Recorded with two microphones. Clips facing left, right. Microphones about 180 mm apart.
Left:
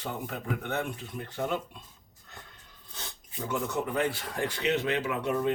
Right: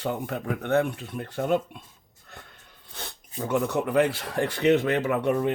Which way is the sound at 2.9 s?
60° right (ahead or behind).